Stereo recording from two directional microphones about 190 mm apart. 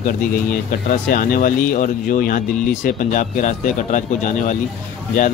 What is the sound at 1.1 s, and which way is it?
A man's voice, 45° left (ahead or behind).